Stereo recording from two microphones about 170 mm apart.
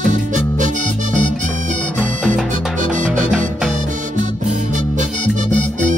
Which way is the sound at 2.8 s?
45° right (ahead or behind).